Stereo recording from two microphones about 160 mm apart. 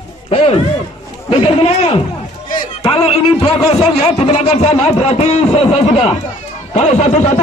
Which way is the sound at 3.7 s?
40° left (ahead or behind).